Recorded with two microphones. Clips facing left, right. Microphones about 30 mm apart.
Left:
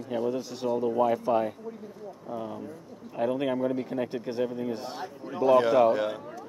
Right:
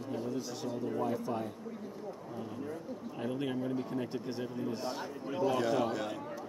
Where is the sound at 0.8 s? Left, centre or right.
Left.